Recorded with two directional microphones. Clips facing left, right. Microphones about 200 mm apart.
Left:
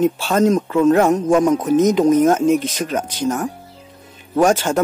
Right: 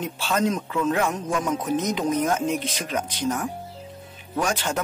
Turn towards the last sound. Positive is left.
turn(degrees=45)  # may be behind; listen again after turning